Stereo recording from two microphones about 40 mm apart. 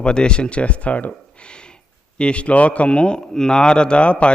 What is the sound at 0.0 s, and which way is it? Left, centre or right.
Speech, left.